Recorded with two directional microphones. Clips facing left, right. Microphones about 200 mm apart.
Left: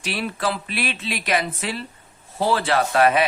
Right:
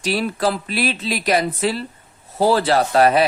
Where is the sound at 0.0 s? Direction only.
40° right (ahead or behind).